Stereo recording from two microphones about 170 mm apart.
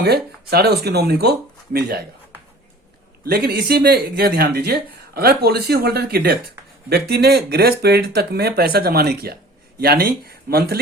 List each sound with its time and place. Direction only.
0.0 s speech: 70° right (ahead or behind)
3.2 s speech: 65° right (ahead or behind)